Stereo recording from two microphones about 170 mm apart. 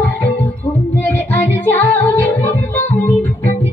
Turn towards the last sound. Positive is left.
turn(degrees=10)  # may be behind; listen again after turning